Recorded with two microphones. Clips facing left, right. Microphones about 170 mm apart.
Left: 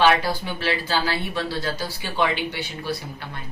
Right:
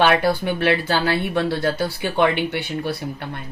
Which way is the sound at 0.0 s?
60° right (ahead or behind).